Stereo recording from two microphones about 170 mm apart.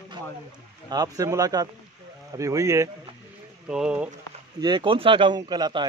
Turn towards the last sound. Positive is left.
turn(degrees=-25)  # may be behind; listen again after turning